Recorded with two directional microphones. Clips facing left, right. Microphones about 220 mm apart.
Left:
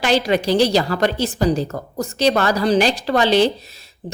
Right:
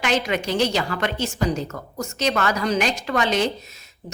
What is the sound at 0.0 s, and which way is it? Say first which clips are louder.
A woman's voice: left 5 dB; 35° left (ahead or behind).